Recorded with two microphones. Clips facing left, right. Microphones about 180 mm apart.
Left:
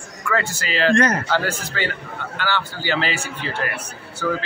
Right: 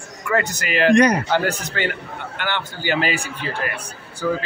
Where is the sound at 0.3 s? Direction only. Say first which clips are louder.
Right 2 dB; 20° right (ahead or behind).